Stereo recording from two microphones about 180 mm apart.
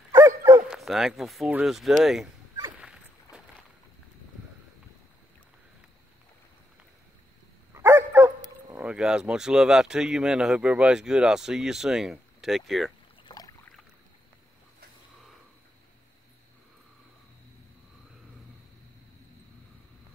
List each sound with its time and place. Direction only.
0.1 s bow-wow: 15° right (ahead or behind)
0.7 s speech: centre (ahead or behind)
2.8 s dog: 5° right (ahead or behind)
7.7 s dog: 15° right (ahead or behind)
8.7 s speech: 5° right (ahead or behind)
13.2 s boat: 20° left (ahead or behind)